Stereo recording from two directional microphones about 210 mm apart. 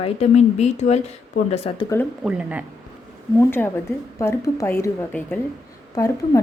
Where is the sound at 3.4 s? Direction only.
10° left (ahead or behind).